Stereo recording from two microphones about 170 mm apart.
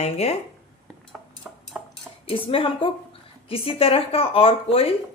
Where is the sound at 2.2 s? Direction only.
30° left (ahead or behind).